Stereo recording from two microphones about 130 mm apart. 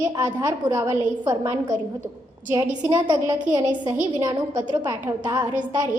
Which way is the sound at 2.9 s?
30° right (ahead or behind).